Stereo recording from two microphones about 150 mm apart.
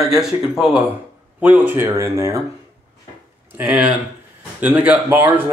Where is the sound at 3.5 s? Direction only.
10° right (ahead or behind).